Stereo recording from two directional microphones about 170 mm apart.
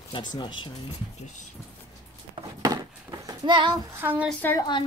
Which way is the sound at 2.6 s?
20° right (ahead or behind).